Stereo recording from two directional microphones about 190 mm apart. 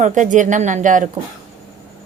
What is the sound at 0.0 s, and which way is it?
Speech, 40° right (ahead or behind).